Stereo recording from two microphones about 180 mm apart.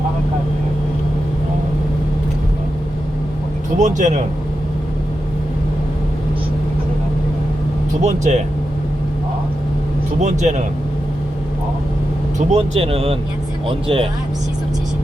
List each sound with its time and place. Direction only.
3.8 s speech: 45° right (ahead or behind)
8.0 s speech: 40° right (ahead or behind)
10.2 s speech: 40° right (ahead or behind)
12.4 s speech: 35° right (ahead or behind)